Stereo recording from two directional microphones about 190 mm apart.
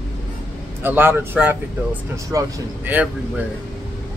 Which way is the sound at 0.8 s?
10° right (ahead or behind).